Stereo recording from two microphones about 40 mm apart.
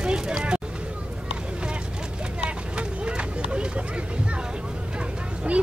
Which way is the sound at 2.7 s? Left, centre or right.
Right.